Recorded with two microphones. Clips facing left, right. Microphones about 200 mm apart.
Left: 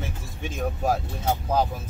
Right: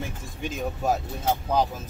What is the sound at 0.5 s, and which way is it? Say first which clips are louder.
Speech: left 1 dB; centre (ahead or behind).